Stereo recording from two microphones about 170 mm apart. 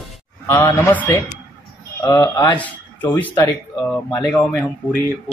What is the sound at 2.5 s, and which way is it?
Speech, 10° left (ahead or behind).